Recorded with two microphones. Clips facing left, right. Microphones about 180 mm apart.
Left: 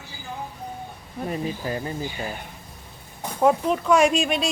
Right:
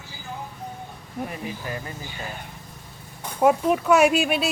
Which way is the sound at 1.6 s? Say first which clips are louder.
Left 3 dB; 30° left (ahead or behind).